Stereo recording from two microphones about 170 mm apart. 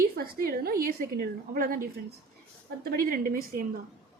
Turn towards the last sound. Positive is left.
turn(degrees=-55)  # may be behind; listen again after turning